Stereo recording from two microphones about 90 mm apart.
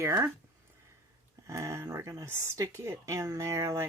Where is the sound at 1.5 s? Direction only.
35° right (ahead or behind).